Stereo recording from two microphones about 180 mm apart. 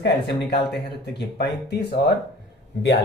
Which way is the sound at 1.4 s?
65° left (ahead or behind).